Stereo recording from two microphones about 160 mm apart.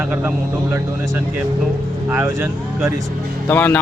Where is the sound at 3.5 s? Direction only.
10° left (ahead or behind).